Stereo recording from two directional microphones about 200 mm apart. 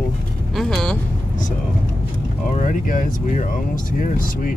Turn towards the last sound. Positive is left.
turn(degrees=40)  # may be behind; listen again after turning